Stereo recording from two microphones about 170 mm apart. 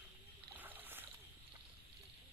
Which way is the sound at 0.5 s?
10° right (ahead or behind).